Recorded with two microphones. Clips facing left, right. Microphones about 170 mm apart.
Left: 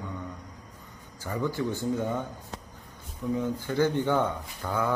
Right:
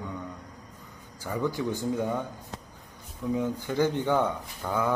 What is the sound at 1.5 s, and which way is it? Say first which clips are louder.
Speech: left 1 dB; 15° right (ahead or behind).